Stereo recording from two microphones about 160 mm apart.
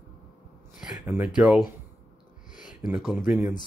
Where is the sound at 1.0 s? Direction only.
10° right (ahead or behind).